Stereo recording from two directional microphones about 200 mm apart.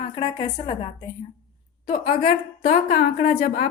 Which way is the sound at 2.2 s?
45° left (ahead or behind).